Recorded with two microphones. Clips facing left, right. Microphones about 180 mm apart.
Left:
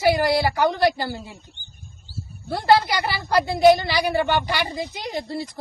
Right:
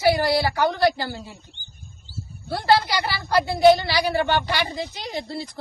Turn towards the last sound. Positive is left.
turn(degrees=15)  # may be behind; listen again after turning